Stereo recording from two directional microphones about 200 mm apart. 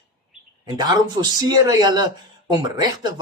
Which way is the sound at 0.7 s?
20° right (ahead or behind).